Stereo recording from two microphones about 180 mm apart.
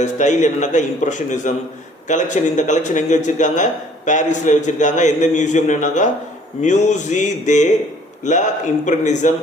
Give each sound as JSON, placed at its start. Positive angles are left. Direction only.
{"t": 0.0, "sound": "speech", "side_deg": 40}